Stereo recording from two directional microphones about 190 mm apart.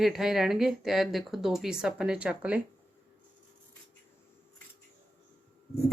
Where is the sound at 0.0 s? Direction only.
Centre (ahead or behind).